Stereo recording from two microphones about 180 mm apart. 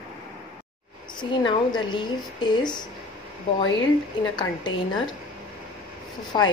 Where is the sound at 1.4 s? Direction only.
25° left (ahead or behind).